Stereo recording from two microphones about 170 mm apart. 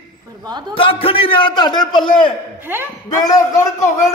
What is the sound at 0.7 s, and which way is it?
A man's voice, 30° left (ahead or behind).